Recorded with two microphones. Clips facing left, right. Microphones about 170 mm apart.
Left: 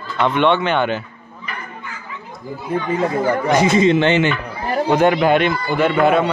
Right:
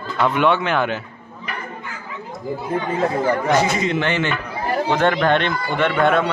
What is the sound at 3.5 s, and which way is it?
Speech, 20° left (ahead or behind).